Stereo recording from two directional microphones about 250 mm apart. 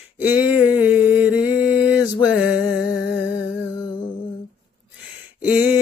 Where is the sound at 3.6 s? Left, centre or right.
Centre.